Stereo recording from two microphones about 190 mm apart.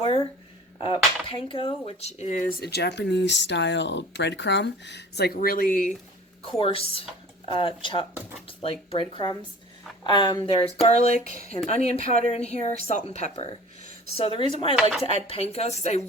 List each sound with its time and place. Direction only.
0.8 s speech: 25° left (ahead or behind)
2.6 s speech: 60° left (ahead or behind); by 5.9 s 45° left (ahead or behind)
6.4 s speech: 30° left (ahead or behind)
10.8 s speech: 35° left (ahead or behind)
14.8 s speech: centre (ahead or behind)
15.3 s speech: 30° left (ahead or behind)